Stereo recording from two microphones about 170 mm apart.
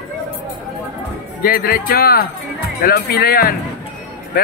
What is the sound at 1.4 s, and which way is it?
Speech, 60° left (ahead or behind).